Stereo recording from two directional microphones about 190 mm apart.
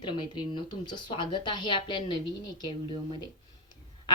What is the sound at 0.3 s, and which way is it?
Speech, 25° left (ahead or behind).